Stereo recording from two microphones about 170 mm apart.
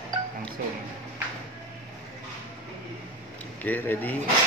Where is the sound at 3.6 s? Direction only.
10° left (ahead or behind).